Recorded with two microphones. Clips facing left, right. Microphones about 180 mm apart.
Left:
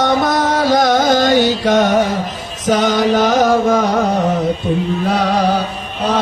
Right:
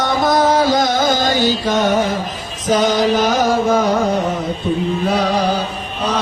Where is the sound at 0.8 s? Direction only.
65° left (ahead or behind).